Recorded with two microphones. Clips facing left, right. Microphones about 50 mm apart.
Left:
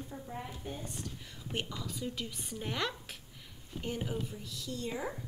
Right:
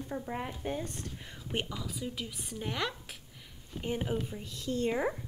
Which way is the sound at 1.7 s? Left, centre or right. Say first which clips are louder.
Right 1 dB; centre.